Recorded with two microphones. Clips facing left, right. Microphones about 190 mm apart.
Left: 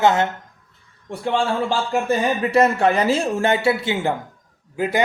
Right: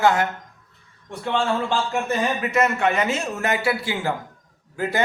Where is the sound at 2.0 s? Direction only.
30° left (ahead or behind).